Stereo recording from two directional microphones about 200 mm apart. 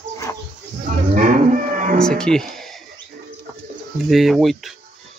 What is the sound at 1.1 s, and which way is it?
Cattle, 40° right (ahead or behind).